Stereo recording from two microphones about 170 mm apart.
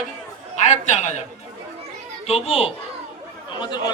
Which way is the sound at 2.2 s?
35° left (ahead or behind).